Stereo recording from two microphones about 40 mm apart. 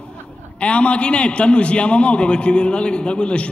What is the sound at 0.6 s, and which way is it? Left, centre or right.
A man's voice, left.